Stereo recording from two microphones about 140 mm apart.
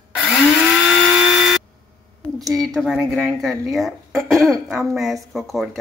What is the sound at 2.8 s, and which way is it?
Speech, centre (ahead or behind).